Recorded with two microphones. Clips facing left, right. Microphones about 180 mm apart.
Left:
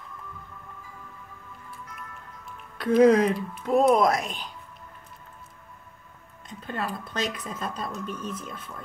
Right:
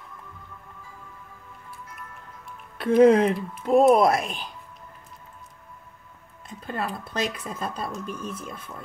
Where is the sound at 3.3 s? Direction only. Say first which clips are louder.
Right 1 dB; centre (ahead or behind).